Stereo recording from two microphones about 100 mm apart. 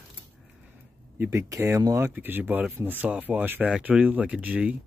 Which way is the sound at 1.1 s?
25° right (ahead or behind).